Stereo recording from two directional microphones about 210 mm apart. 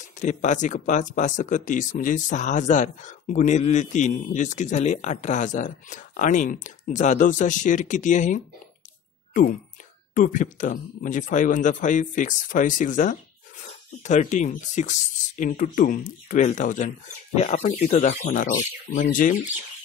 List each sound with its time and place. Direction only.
0.2 s speech: 35° left (ahead or behind)
10.1 s speech: 35° left (ahead or behind)